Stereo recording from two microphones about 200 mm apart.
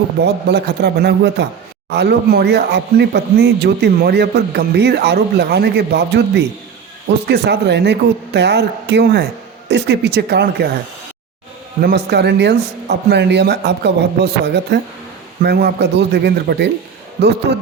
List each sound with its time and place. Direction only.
0.2 s speech: 55° right (ahead or behind)
11.8 s speech: 55° right (ahead or behind)
17.5 s a sound: 55° right (ahead or behind)